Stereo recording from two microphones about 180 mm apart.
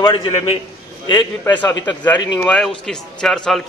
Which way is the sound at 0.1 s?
30° left (ahead or behind).